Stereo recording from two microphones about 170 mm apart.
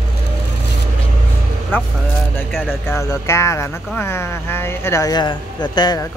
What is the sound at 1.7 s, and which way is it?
Speech, 10° left (ahead or behind).